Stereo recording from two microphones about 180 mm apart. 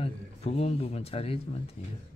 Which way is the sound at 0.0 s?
35° left (ahead or behind).